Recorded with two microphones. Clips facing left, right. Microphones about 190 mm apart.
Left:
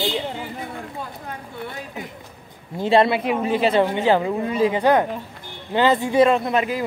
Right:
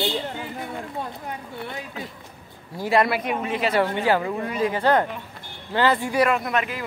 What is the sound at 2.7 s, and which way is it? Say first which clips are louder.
Speech: left 4 dB; 25° left (ahead or behind).